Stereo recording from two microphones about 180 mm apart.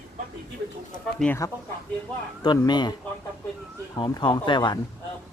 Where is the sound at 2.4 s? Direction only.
25° left (ahead or behind).